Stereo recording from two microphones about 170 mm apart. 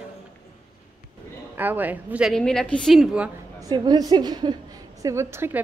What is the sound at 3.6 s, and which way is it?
A woman's voice, 25° right (ahead or behind).